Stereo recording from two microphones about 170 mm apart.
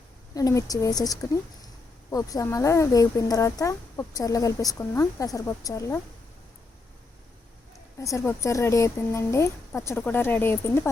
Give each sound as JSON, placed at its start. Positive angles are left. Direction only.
{"t": 0.3, "sound": "speech", "side_deg": 20}
{"t": 7.9, "sound": "a woman's voice", "side_deg": 20}